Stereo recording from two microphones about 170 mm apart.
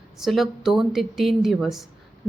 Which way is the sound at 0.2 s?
Centre (ahead or behind).